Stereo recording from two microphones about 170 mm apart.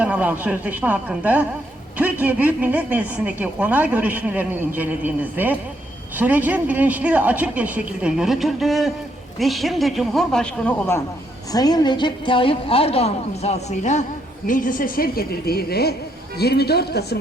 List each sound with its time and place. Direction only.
0.0 s speech: 10° right (ahead or behind); by 11.0 s 10° left (ahead or behind)
11.5 s a woman's voice: 25° left (ahead or behind); by 14.0 s 40° left (ahead or behind)
14.4 s a woman's voice: 50° left (ahead or behind); by 17.2 s 70° left (ahead or behind)